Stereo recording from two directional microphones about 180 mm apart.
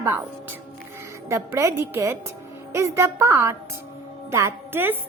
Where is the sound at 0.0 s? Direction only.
10° right (ahead or behind).